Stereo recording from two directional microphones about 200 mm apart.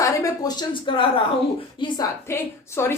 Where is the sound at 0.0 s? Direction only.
15° left (ahead or behind).